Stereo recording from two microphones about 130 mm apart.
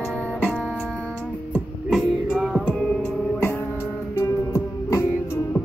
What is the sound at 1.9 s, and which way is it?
Music, 5° right (ahead or behind).